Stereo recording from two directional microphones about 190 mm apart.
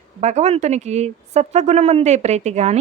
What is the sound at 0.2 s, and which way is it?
Speech, 35° right (ahead or behind).